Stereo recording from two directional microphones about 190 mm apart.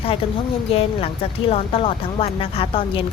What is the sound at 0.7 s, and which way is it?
A woman's voice, 30° left (ahead or behind).